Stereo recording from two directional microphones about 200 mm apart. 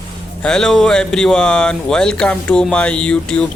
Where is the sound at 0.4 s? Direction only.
Centre (ahead or behind).